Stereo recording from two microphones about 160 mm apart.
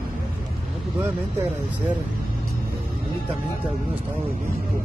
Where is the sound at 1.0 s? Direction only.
15° right (ahead or behind).